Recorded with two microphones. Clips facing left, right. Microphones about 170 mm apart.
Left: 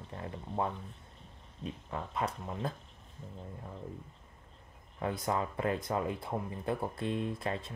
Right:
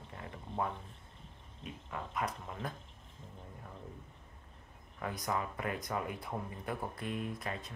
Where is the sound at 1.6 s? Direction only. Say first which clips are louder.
Left 4 dB; 30° left (ahead or behind).